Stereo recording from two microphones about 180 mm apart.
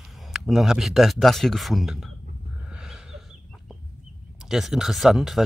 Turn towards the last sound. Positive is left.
turn(degrees=0)  # may be behind; listen again after turning